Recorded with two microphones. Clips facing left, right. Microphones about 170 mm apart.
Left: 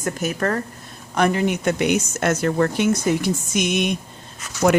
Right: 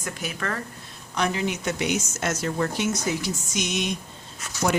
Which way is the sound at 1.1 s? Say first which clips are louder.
Left 6 dB; 55° left (ahead or behind).